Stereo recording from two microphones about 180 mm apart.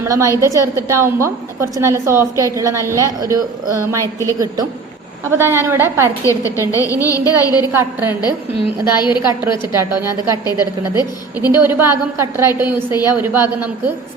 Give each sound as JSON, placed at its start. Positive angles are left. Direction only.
{"t": 0.0, "sound": "a woman's voice", "side_deg": -15}
{"t": 6.2, "sound": "a woman's voice", "side_deg": 20}
{"t": 7.7, "sound": "a woman's voice", "side_deg": -10}
{"t": 8.2, "sound": "speech", "side_deg": 25}
{"t": 9.7, "sound": "a woman's voice", "side_deg": -15}